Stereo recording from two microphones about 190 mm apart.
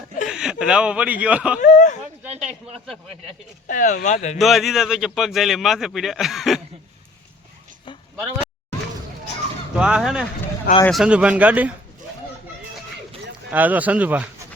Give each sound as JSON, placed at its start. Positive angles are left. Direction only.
{"t": 0.3, "sound": "speech", "side_deg": -5}
{"t": 1.5, "sound": "a sound", "side_deg": 45}
{"t": 2.4, "sound": "a man's voice", "side_deg": 0}
{"t": 3.7, "sound": "speech", "side_deg": 45}
{"t": 4.4, "sound": "a man's voice", "side_deg": 0}
{"t": 9.7, "sound": "a man's voice", "side_deg": -5}
{"t": 13.5, "sound": "speech", "side_deg": -10}